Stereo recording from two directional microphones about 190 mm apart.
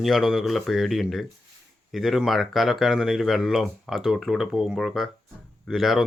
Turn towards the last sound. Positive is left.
turn(degrees=0)  # may be behind; listen again after turning